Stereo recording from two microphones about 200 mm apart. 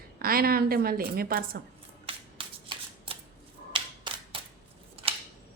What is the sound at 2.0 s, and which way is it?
Shuffling cards, 25° right (ahead or behind).